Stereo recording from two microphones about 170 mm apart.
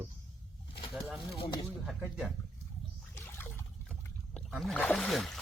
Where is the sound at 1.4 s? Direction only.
25° left (ahead or behind).